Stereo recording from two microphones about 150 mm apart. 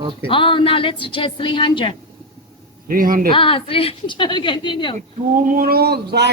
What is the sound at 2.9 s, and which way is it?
Speech, 70° right (ahead or behind).